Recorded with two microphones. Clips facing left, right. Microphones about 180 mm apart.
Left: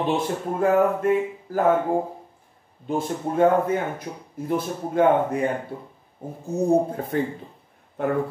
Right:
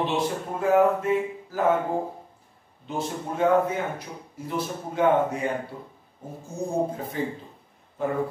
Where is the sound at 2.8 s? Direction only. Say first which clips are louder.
Left 5 dB; 50° left (ahead or behind).